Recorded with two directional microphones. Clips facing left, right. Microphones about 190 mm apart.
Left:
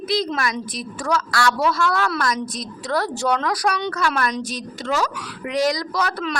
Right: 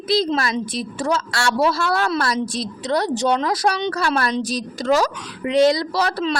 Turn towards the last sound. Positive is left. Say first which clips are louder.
# right 3 dB
turn(degrees=-30)  # may be behind; listen again after turning